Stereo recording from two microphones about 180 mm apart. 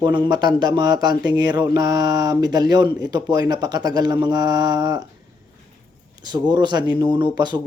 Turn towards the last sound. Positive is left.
turn(degrees=-25)  # may be behind; listen again after turning